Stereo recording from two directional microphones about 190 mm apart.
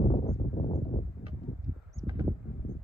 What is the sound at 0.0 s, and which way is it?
Horse, 35° left (ahead or behind).